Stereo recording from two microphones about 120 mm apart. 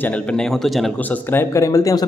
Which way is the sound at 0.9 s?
15° left (ahead or behind).